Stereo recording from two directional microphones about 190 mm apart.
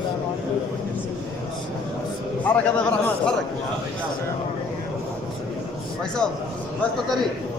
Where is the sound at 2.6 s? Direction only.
5° left (ahead or behind).